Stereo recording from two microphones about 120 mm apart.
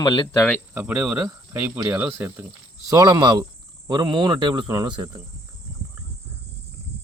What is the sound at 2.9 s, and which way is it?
Speech, 35° right (ahead or behind).